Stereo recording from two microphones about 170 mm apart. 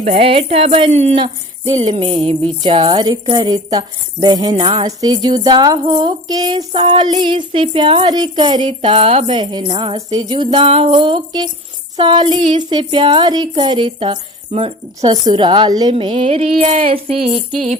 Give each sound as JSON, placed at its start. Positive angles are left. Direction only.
{"t": 0.0, "sound": "speech", "side_deg": -35}